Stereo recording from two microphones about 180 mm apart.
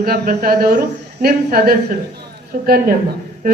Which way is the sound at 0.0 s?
55° right (ahead or behind).